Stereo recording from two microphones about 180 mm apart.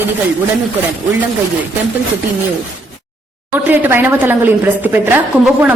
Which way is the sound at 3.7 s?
10° right (ahead or behind).